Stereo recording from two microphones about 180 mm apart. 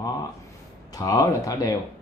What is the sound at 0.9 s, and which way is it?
Speech, 20° left (ahead or behind).